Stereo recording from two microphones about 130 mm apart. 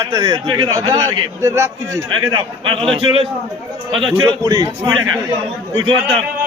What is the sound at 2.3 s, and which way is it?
A man's voice, 45° right (ahead or behind).